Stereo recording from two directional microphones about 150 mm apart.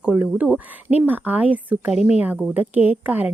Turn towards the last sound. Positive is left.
turn(degrees=-10)  # may be behind; listen again after turning